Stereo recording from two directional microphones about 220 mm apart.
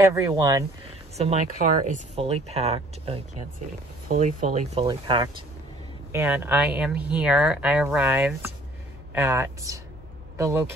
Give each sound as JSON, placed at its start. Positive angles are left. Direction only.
{"t": 0.0, "sound": "speech", "side_deg": -15}
{"t": 1.1, "sound": "speech", "side_deg": -30}
{"t": 4.8, "sound": "speech", "side_deg": -20}